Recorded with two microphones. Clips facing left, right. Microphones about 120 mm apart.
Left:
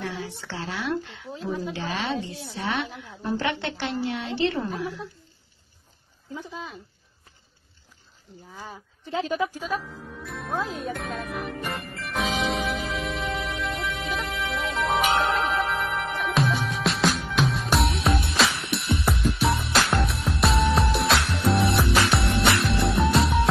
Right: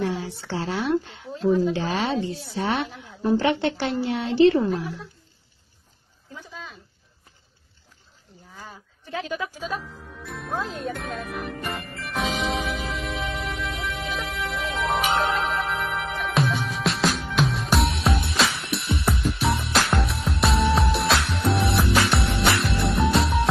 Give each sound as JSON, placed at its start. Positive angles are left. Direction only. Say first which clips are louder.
{"t": 0.0, "sound": "a sound", "louder": "right 6 dB", "side_deg": -30}
{"t": 0.4, "sound": "speech", "louder": "right 5 dB", "side_deg": -35}
{"t": 6.3, "sound": "speech", "louder": "left 4 dB", "side_deg": 20}
{"t": 9.0, "sound": "speech", "louder": "left 3 dB", "side_deg": 30}
{"t": 10.2, "sound": "music", "louder": "even", "side_deg": 0}